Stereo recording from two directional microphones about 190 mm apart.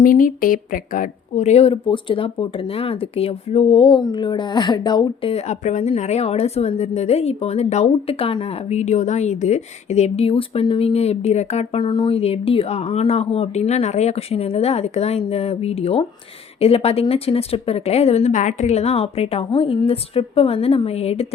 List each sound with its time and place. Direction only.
0.0 s speech: 45° left (ahead or behind)